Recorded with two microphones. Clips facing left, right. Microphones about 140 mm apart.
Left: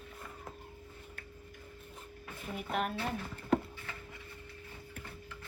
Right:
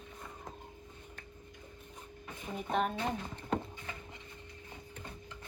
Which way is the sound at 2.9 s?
20° right (ahead or behind).